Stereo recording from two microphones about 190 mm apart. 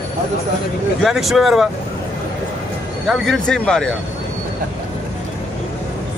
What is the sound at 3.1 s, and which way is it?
Speech, centre (ahead or behind).